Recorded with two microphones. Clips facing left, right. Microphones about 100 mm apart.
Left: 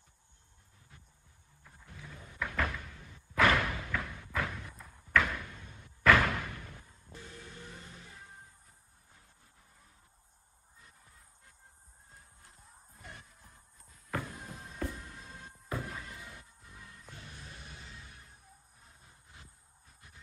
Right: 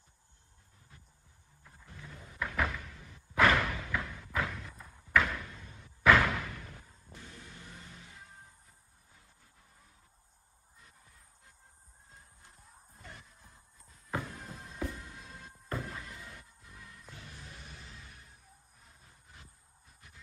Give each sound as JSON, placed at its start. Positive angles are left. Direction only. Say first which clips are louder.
{"t": 1.6, "sound": "door", "louder": "even", "side_deg": 0}
{"t": 12.4, "sound": "music", "louder": "even", "side_deg": 0}
{"t": 17.1, "sound": "music", "louder": "even", "side_deg": 30}